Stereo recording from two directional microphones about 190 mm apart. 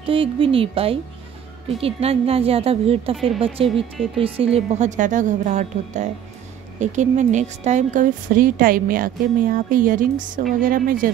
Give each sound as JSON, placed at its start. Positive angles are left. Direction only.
{"t": 0.0, "sound": "a woman's voice", "side_deg": -30}